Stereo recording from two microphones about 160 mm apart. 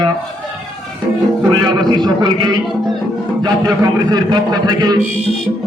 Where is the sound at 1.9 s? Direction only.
25° right (ahead or behind).